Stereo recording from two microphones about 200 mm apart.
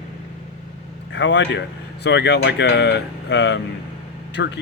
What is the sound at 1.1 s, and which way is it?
Speech, 65° left (ahead or behind).